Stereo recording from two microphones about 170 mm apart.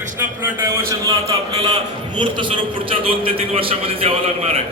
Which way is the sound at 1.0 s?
25° right (ahead or behind).